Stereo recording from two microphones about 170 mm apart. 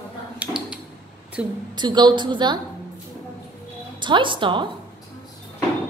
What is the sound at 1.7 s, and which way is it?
Speech, 25° right (ahead or behind).